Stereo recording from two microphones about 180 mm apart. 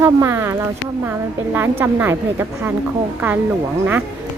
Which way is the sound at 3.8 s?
10° right (ahead or behind).